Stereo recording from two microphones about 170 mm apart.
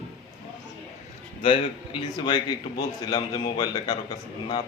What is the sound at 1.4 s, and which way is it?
Speech, 30° left (ahead or behind).